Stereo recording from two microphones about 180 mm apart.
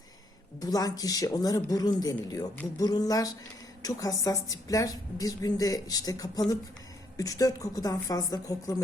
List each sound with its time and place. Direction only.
0.6 s speech: 20° left (ahead or behind)